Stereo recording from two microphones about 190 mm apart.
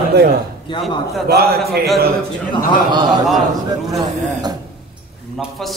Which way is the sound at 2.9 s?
20° right (ahead or behind).